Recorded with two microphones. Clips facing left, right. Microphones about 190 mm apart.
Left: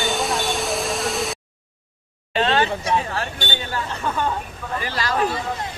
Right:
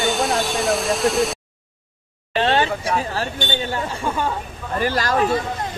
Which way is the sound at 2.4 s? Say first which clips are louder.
Right 1 dB; 30° right (ahead or behind).